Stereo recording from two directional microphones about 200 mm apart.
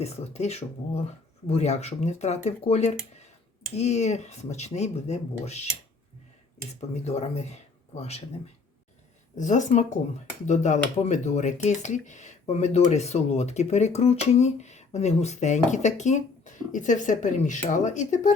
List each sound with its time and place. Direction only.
0.0 s speech: 30° left (ahead or behind)
6.9 s speech: 35° left (ahead or behind)
9.4 s speech: 40° left (ahead or behind)